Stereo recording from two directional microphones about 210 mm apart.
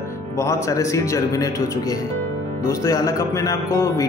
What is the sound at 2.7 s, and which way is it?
Speech, 15° left (ahead or behind).